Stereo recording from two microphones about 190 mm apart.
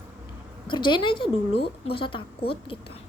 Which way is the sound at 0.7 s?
25° left (ahead or behind).